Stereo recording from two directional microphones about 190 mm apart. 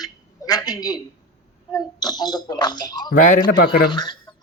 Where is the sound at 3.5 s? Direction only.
60° left (ahead or behind).